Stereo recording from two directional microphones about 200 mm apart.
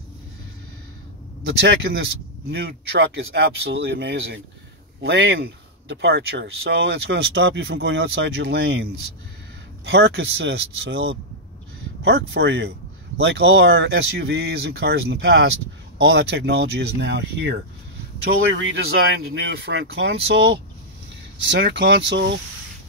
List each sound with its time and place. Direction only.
2.0 s speech: 60° right (ahead or behind)
9.8 s speech: 60° right (ahead or behind)
21.4 s speech: 60° right (ahead or behind)